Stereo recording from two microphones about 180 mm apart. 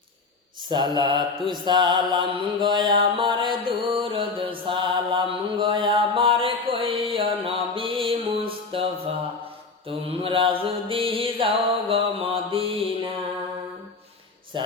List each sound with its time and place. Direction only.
0.7 s mantra: 25° right (ahead or behind)
14.5 s speech: 25° right (ahead or behind)